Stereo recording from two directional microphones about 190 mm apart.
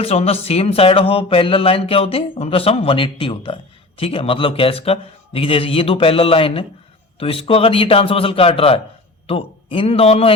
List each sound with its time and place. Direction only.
0.0 s a man's voice: 35° left (ahead or behind)